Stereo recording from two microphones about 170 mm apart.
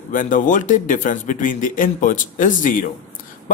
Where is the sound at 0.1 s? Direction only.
50° left (ahead or behind).